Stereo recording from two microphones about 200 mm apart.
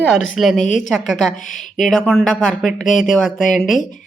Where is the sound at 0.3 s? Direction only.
Centre (ahead or behind).